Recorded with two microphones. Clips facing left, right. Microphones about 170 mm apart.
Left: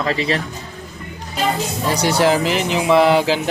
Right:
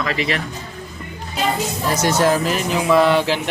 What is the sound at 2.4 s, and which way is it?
Music, 85° left.